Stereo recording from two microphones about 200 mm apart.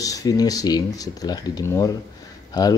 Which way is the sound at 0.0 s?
15° left (ahead or behind).